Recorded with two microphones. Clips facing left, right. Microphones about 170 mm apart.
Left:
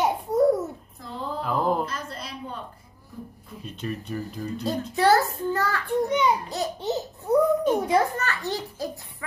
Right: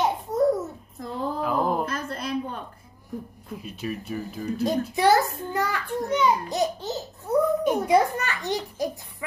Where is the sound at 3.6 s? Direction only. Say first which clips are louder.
Even; 5° right (ahead or behind).